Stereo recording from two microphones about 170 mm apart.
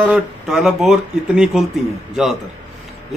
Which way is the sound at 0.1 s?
5° right (ahead or behind).